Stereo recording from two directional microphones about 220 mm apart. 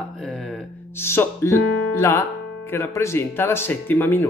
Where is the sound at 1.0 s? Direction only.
10° left (ahead or behind).